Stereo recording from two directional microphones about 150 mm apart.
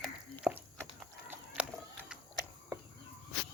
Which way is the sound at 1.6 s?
10° right (ahead or behind).